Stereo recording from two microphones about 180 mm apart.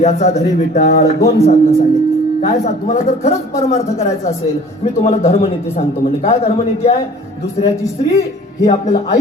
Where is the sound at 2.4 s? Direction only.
40° left (ahead or behind).